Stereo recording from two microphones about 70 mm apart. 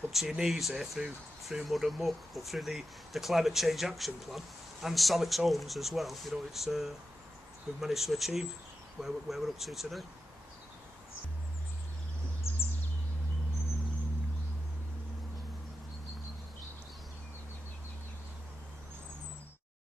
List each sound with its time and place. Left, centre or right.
0.1 s speech: centre
12.5 s bird: left